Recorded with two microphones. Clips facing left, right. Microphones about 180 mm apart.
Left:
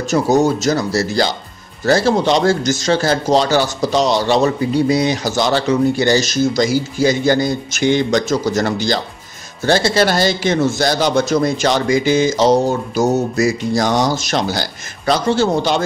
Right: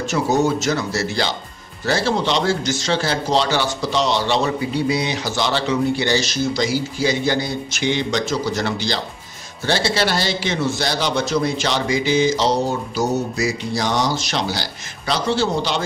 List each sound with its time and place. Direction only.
0.0 s a man's voice: 40° left (ahead or behind)